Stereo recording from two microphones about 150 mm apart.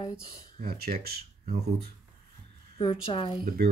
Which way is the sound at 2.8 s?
35° left (ahead or behind).